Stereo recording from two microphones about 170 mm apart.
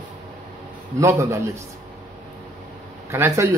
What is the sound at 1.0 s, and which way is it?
Speech, 15° right (ahead or behind).